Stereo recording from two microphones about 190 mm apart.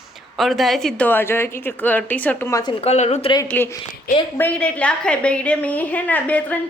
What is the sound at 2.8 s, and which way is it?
Speech, 35° left (ahead or behind).